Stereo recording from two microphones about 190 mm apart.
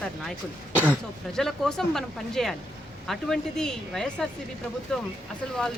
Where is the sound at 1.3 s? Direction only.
Centre (ahead or behind).